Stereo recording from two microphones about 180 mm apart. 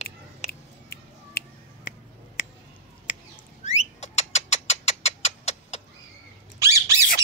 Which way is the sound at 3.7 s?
40° left (ahead or behind).